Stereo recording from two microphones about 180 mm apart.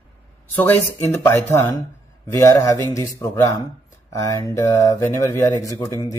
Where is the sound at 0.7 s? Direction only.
10° left (ahead or behind).